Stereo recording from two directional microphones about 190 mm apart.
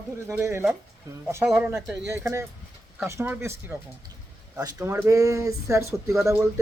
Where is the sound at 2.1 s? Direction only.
15° right (ahead or behind).